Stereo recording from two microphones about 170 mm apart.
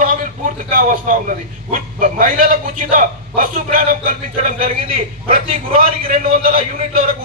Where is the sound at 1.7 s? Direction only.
50° right (ahead or behind).